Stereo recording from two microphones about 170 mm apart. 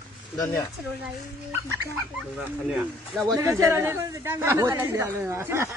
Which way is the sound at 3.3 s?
15° right (ahead or behind).